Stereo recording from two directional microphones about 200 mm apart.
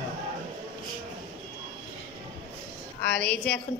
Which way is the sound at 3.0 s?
55° left (ahead or behind).